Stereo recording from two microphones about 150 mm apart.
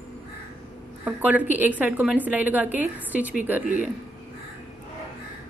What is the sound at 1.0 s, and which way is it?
Speech, 10° right (ahead or behind).